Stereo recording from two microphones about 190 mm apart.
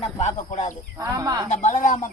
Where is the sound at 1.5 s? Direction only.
40° left (ahead or behind).